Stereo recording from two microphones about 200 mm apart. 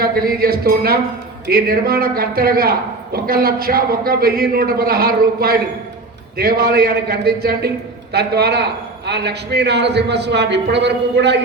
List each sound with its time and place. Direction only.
0.0 s a man's voice: 50° right (ahead or behind)